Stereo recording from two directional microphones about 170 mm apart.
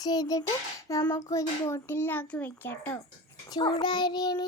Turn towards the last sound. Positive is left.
turn(degrees=25)  # may be behind; listen again after turning